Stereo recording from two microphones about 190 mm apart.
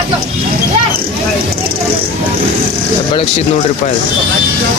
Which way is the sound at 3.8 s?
45° left (ahead or behind).